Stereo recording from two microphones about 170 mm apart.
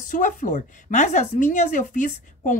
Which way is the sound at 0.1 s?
50° left (ahead or behind).